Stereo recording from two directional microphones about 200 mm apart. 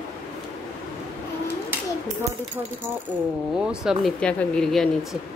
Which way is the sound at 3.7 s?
5° right (ahead or behind).